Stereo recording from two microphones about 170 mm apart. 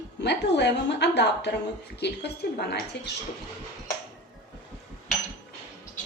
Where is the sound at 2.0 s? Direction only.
75° left (ahead or behind).